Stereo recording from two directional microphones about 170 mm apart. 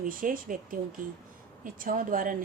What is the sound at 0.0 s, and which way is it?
Speech, 55° right (ahead or behind).